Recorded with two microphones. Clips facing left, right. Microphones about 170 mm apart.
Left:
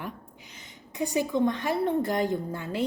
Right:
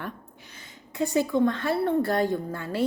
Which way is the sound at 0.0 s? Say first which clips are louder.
Right 1 dB; 15° left (ahead or behind).